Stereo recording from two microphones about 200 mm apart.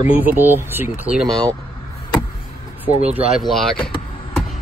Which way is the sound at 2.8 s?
5° right (ahead or behind).